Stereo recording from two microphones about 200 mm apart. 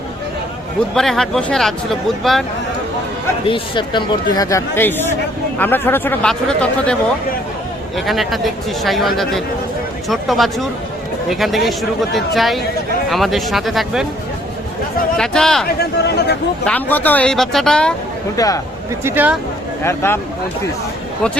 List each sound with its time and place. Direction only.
0.9 s a man's voice: centre (ahead or behind)
3.4 s speech: 25° left (ahead or behind); by 6.9 s 5° left (ahead or behind)
7.9 s a man's voice: centre (ahead or behind)
15.2 s a man's voice: 5° left (ahead or behind)
15.6 s speech: 55° left (ahead or behind)
16.6 s a man's voice: 10° left (ahead or behind)
18.3 s speech: 15° left (ahead or behind)
19.0 s speech: 10° right (ahead or behind)
19.8 s speech: 15° left (ahead or behind)